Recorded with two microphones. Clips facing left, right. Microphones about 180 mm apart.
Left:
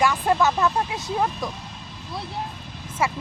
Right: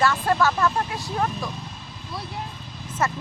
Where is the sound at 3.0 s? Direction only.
10° left (ahead or behind).